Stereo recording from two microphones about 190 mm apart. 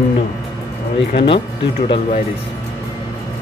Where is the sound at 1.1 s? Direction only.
30° left (ahead or behind).